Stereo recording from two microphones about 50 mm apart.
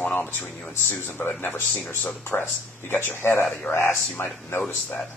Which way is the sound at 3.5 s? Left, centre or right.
Left.